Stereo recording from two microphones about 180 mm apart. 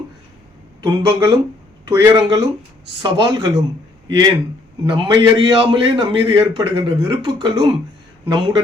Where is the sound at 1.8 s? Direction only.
20° right (ahead or behind).